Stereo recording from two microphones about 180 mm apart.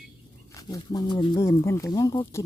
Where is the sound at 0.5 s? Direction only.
20° left (ahead or behind).